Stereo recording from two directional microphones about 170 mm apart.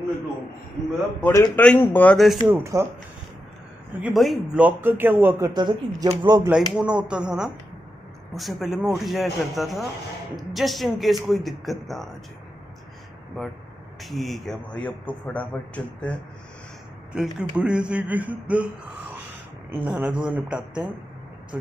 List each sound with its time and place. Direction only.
1.2 s a man's voice: 15° left (ahead or behind)
2.4 s speech: 15° right (ahead or behind)
4.0 s speech: centre (ahead or behind)
5.5 s speech: 25° right (ahead or behind)
6.5 s speech: 5° right (ahead or behind)
14.0 s a man's voice: centre (ahead or behind)
17.1 s speech: 5° right (ahead or behind)
19.7 s speech: 10° right (ahead or behind)